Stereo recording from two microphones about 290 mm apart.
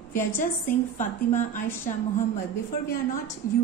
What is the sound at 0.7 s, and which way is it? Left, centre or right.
A woman's voice, left.